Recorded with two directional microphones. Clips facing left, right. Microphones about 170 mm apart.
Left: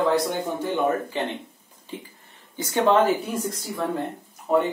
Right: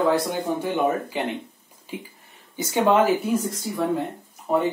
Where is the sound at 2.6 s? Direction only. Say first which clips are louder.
Even; 15° right (ahead or behind).